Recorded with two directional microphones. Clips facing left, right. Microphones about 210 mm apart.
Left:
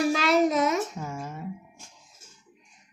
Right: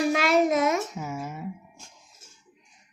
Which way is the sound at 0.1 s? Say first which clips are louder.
Even; 35° left (ahead or behind).